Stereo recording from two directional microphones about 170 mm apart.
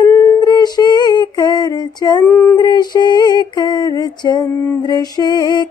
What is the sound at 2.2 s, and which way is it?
Music, 10° left (ahead or behind).